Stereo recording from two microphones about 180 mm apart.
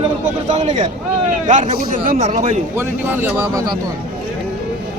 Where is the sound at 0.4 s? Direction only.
40° right (ahead or behind).